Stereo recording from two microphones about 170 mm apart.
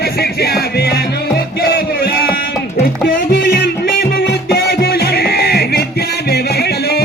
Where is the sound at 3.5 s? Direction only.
75° left (ahead or behind).